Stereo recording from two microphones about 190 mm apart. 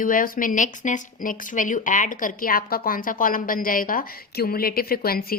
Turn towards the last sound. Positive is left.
turn(degrees=50)  # may be behind; listen again after turning